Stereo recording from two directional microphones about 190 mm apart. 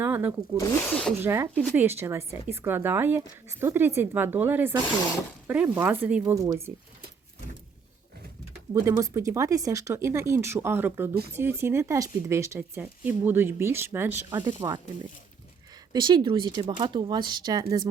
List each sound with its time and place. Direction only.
0.0 s speech: 10° right (ahead or behind)
8.7 s speech: 15° right (ahead or behind)
15.9 s speech: 25° right (ahead or behind)